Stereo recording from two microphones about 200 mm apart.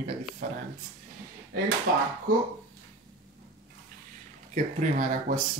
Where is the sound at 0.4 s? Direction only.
40° right (ahead or behind).